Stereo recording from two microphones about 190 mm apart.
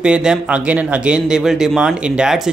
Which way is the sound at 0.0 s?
5° right (ahead or behind).